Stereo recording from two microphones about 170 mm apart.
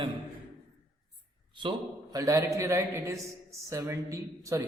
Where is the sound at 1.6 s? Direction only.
25° right (ahead or behind).